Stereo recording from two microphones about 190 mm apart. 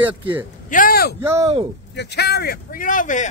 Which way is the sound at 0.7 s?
50° left (ahead or behind).